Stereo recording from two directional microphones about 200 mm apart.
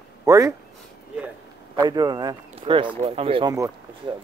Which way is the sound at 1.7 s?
20° right (ahead or behind).